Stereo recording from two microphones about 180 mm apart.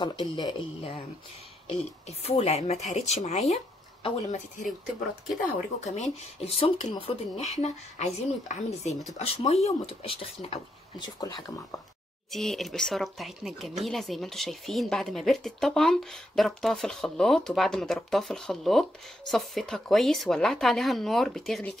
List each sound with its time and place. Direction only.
0.0 s speech: 25° left (ahead or behind)
1.7 s speech: 35° left (ahead or behind)
5.9 s speech: 40° left (ahead or behind)
11.1 s speech: 20° left (ahead or behind)
12.3 s speech: centre (ahead or behind)